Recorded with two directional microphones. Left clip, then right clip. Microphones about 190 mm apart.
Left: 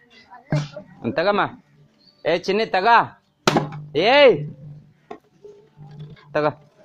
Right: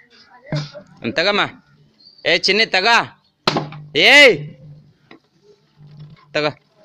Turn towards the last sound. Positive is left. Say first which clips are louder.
# right 1 dB
turn(degrees=-10)  # may be behind; listen again after turning